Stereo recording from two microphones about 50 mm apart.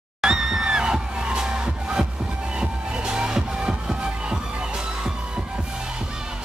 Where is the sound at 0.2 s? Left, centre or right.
Centre.